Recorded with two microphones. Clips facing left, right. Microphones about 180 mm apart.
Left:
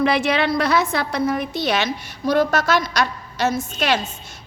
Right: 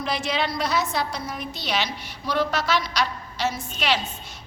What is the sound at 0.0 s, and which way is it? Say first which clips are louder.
A woman's voice: left 8 dB; 65° left (ahead or behind).